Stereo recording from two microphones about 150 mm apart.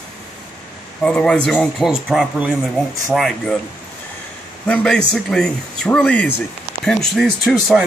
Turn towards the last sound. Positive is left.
turn(degrees=0)  # may be behind; listen again after turning